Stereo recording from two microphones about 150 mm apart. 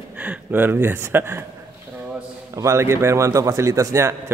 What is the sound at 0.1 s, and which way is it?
Speech, 10° right (ahead or behind).